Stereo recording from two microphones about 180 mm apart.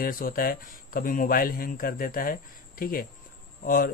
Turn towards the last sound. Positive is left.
turn(degrees=55)  # may be behind; listen again after turning